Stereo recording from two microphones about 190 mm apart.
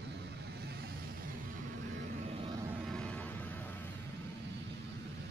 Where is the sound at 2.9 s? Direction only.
5° left (ahead or behind).